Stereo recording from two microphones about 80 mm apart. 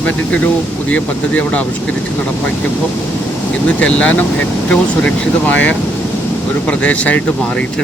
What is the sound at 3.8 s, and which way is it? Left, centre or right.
Speech, centre.